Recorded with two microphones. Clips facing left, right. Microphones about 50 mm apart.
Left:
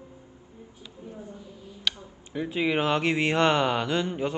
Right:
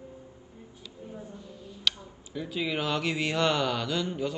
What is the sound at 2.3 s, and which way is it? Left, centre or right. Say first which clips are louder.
Speech: left 5 dB; left.